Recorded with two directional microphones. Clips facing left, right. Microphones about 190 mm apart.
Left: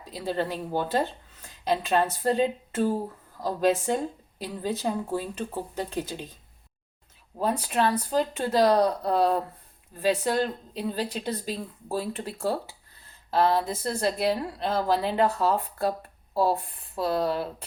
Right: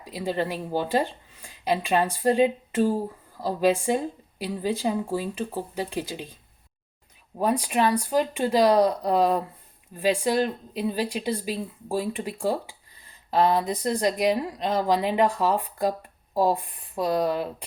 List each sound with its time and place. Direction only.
0.0 s speech: 10° right (ahead or behind)
7.3 s speech: 15° right (ahead or behind)